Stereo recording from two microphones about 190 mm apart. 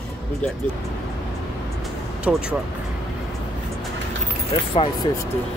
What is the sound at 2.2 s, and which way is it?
Speech, 5° right (ahead or behind).